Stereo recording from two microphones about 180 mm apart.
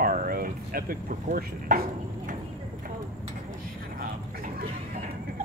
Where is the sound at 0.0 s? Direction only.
50° right (ahead or behind).